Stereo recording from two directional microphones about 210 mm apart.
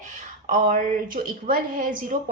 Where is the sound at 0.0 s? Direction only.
35° right (ahead or behind).